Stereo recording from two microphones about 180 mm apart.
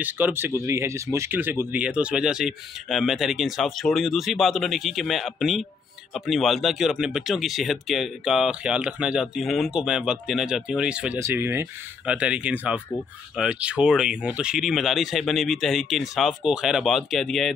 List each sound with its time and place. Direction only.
0.0 s speech: 10° right (ahead or behind)